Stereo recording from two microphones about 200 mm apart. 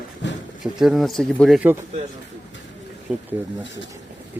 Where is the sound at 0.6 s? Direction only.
Centre (ahead or behind).